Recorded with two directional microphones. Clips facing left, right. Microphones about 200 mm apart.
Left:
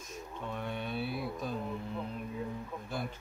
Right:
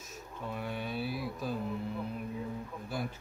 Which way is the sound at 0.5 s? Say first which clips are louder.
Right 1 dB; 5° right (ahead or behind).